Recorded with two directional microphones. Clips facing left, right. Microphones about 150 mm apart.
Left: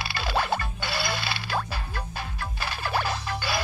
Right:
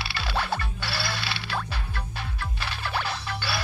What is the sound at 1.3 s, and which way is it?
Music, 45° left (ahead or behind).